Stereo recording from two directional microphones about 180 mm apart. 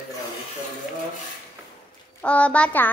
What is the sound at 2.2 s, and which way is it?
Child singing, 5° left (ahead or behind).